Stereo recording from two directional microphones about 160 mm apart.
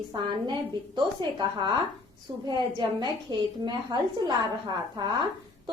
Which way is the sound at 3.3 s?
25° right (ahead or behind).